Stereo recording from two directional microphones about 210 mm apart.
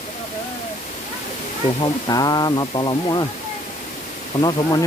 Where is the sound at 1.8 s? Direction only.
20° left (ahead or behind).